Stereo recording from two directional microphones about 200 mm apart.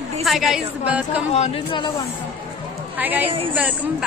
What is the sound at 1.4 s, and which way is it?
Speech, 25° left (ahead or behind).